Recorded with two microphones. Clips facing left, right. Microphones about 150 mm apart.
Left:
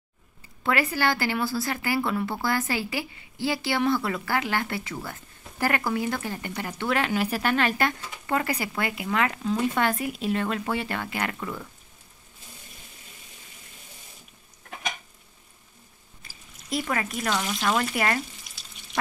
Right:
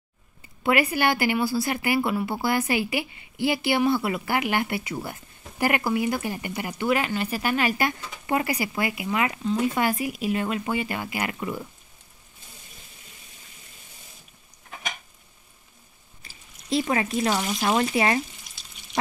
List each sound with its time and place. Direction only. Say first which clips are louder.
0.7 s a woman's voice: right 3 dB; 15° right (ahead or behind)
16.2 s a sound: even; 25° right (ahead or behind)
17.3 s a woman's voice: right 2 dB; 10° right (ahead or behind)
17.6 s speech: right 3 dB; 25° right (ahead or behind)